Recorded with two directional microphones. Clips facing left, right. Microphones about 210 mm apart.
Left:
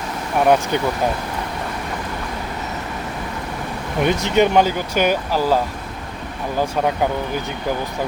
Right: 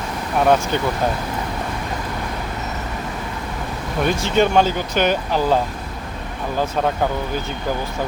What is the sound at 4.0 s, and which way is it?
Speech, 20° left (ahead or behind).